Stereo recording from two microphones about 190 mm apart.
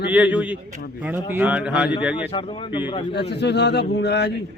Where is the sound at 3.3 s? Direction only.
65° left (ahead or behind).